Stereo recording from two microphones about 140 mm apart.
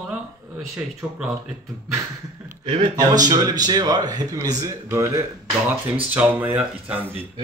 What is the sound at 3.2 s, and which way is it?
Speech, 30° right (ahead or behind).